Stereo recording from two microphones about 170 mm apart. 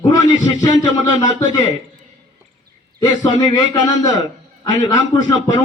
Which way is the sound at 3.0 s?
25° left (ahead or behind).